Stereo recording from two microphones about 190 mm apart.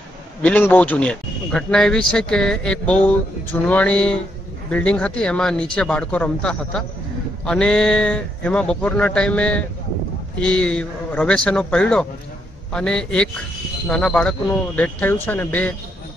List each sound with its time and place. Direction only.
0.4 s a man's voice: 10° left (ahead or behind)